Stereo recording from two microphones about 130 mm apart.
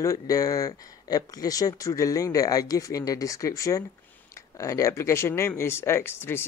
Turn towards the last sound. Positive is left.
turn(degrees=20)  # may be behind; listen again after turning